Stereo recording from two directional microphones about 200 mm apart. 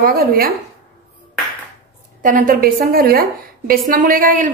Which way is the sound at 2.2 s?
45° right (ahead or behind).